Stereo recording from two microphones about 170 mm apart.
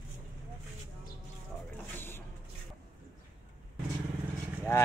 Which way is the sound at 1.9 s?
15° left (ahead or behind).